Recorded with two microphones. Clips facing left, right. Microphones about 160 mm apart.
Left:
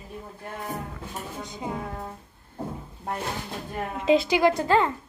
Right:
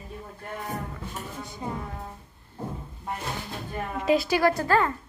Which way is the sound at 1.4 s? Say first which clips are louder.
Left 1 dB; 15° left (ahead or behind).